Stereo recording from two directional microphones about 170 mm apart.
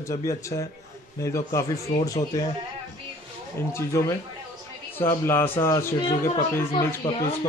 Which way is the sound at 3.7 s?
15° left (ahead or behind).